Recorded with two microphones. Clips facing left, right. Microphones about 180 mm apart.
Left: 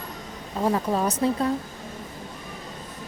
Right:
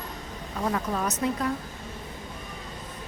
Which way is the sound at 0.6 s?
30° left (ahead or behind).